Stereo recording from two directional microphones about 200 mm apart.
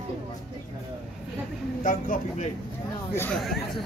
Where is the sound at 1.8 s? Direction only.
45° left (ahead or behind).